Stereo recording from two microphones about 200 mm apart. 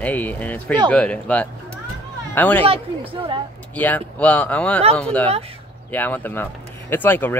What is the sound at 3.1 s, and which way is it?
Speech, 25° right (ahead or behind).